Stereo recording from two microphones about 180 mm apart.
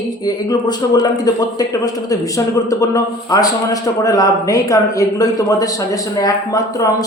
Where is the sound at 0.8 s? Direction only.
20° left (ahead or behind).